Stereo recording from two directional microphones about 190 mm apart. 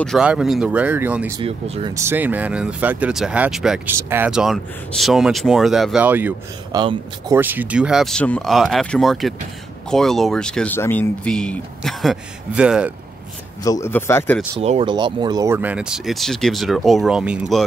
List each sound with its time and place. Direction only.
0.0 s speech: centre (ahead or behind)
1.4 s speech: 30° right (ahead or behind)
2.0 s speech: 10° right (ahead or behind)
6.8 s speech: 25° right (ahead or behind)
7.3 s speech: 10° right (ahead or behind)
13.7 s a man's voice: 15° left (ahead or behind)
14.6 s speech: 30° right (ahead or behind); by 17.6 s centre (ahead or behind)